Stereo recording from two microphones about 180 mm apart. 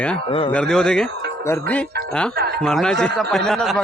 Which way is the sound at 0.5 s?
5° left (ahead or behind).